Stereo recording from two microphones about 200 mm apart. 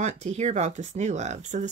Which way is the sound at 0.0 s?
35° right (ahead or behind).